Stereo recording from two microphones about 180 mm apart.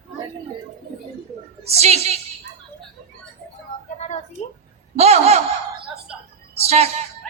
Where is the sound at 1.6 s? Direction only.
35° right (ahead or behind).